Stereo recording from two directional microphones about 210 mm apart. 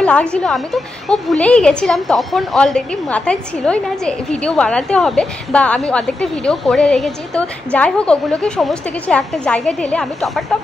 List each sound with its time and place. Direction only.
0.0 s speech: 5° left (ahead or behind)